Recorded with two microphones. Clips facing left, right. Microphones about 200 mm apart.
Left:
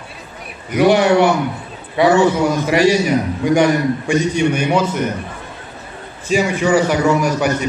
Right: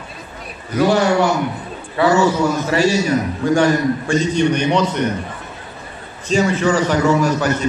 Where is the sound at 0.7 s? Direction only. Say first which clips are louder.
Left 3 dB; 20° left (ahead or behind).